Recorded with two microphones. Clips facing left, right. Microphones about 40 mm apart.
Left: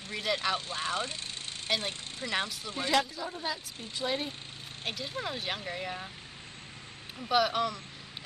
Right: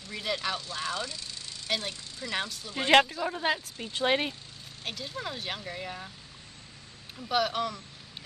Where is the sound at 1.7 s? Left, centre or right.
Left.